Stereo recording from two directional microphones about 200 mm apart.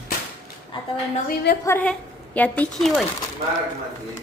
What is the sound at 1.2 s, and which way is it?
Speech, 50° left (ahead or behind).